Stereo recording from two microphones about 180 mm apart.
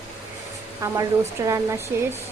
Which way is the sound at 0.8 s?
15° right (ahead or behind).